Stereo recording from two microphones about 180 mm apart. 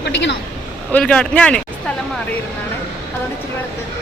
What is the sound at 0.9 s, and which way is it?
Speech, 5° left (ahead or behind).